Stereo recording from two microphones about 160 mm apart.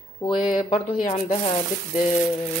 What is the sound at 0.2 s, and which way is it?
Speech, 30° left (ahead or behind).